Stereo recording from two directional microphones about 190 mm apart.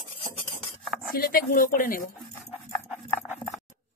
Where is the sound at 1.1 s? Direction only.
50° left (ahead or behind).